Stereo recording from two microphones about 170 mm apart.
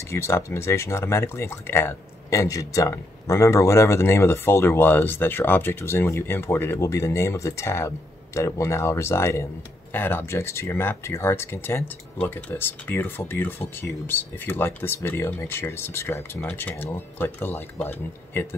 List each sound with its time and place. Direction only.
0.1 s speech: 15° left (ahead or behind)